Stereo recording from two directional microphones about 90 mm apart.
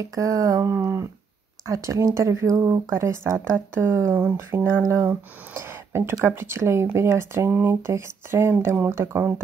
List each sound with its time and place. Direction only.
0.0 s speech: 40° right (ahead or behind)
0.7 s speech: 25° right (ahead or behind)